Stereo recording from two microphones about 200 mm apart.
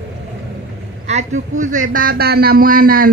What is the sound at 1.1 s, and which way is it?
A man's voice, 35° right (ahead or behind).